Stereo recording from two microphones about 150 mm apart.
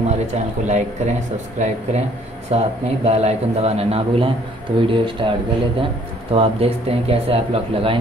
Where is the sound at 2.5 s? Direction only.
45° right (ahead or behind).